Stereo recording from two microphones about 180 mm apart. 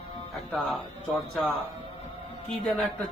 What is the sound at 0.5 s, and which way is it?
Speech, centre (ahead or behind).